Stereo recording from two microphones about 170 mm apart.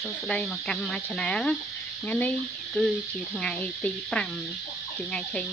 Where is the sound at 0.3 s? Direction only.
Centre (ahead or behind).